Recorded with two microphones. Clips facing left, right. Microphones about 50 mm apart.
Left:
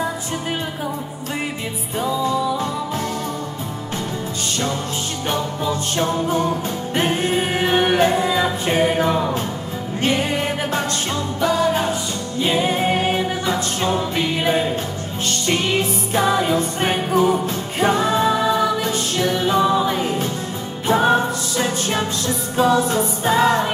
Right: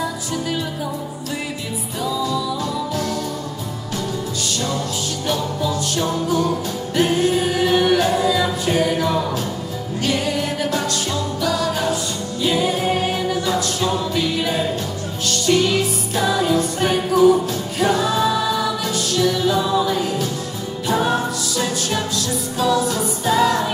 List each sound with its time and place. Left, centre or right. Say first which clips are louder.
0.0 s music: even; left
2.0 s music: left 2 dB; left
5.3 s music: even; left